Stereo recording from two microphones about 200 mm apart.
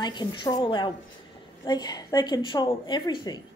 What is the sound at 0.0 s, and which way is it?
A woman's voice, 20° left (ahead or behind).